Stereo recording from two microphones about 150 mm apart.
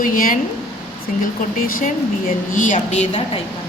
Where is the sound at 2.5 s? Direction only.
60° left (ahead or behind).